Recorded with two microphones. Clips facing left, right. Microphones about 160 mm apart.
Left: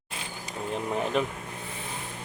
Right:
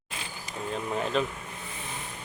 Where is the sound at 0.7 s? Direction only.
15° left (ahead or behind).